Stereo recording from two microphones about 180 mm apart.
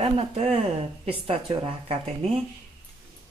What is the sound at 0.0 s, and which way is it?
Speech, 35° right (ahead or behind).